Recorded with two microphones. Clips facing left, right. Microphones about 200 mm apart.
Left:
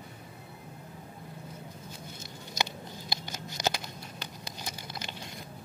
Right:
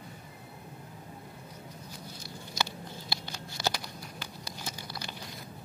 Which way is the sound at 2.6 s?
20° left (ahead or behind).